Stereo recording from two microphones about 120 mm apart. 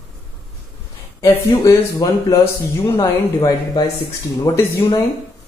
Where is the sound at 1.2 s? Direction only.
25° left (ahead or behind).